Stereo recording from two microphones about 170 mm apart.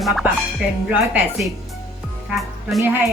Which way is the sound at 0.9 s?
5° right (ahead or behind).